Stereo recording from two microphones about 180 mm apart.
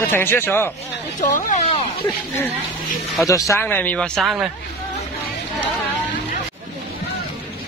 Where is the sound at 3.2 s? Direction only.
15° left (ahead or behind); by 4.5 s centre (ahead or behind).